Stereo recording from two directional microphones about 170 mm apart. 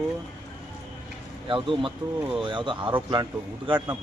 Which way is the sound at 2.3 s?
30° right (ahead or behind).